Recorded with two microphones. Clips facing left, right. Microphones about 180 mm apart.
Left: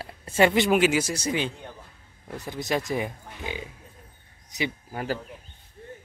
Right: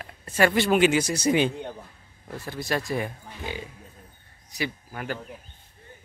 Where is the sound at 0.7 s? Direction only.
5° left (ahead or behind).